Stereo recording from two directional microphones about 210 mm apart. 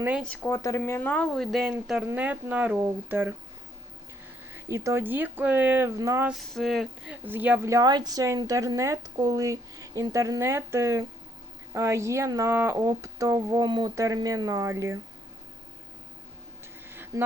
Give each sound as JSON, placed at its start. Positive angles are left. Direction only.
{"t": 0.0, "sound": "a woman's voice", "side_deg": -5}
{"t": 0.3, "sound": "a woman's voice", "side_deg": 10}
{"t": 4.5, "sound": "a woman's voice", "side_deg": -15}
{"t": 6.5, "sound": "a woman's voice", "side_deg": 0}
{"t": 16.9, "sound": "a sound", "side_deg": -10}